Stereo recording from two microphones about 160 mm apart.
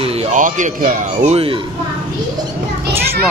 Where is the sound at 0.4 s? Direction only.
55° right (ahead or behind).